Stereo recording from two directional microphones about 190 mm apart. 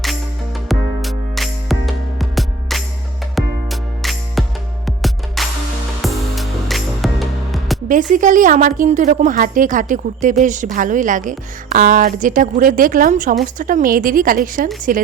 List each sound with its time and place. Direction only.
0.7 s music: centre (ahead or behind)
8.1 s a woman's voice: 45° right (ahead or behind)